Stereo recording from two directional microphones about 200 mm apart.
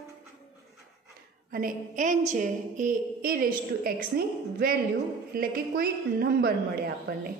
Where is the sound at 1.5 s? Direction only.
40° right (ahead or behind).